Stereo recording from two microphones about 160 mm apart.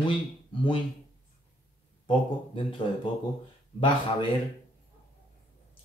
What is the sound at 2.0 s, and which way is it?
Speech, 35° left (ahead or behind).